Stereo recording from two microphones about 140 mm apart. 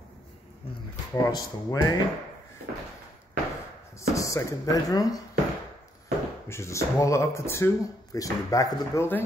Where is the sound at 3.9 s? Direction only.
25° left (ahead or behind).